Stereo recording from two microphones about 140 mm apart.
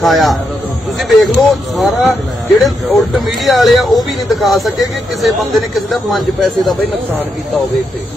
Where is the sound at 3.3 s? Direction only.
Centre (ahead or behind).